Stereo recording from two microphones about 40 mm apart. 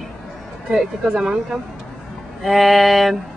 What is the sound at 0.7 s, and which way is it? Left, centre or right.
Speech, centre.